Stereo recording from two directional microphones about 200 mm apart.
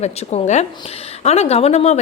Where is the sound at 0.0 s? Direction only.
30° left (ahead or behind).